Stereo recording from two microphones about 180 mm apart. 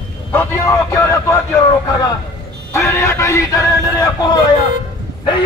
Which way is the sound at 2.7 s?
15° left (ahead or behind).